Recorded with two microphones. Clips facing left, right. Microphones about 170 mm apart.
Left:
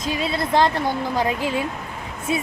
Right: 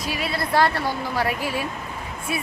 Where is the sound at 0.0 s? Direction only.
20° left (ahead or behind).